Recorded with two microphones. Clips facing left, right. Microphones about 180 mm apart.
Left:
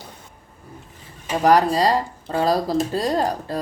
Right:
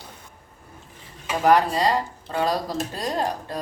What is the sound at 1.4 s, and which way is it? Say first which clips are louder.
Speech: left 2 dB; 35° left (ahead or behind).